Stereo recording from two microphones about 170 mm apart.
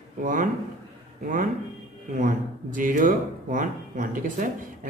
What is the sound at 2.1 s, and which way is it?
Speech, 50° right (ahead or behind).